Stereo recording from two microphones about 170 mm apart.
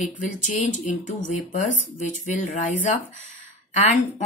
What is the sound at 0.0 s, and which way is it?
Speech, 45° left (ahead or behind).